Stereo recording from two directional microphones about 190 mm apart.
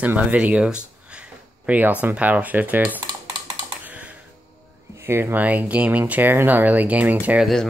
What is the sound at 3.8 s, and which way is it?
Computer keyboard, 5° right (ahead or behind).